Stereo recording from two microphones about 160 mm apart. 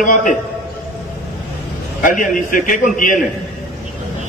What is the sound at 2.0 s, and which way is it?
A man's voice, 55° left (ahead or behind).